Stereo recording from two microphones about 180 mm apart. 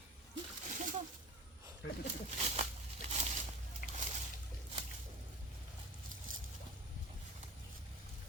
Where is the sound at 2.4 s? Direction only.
35° right (ahead or behind).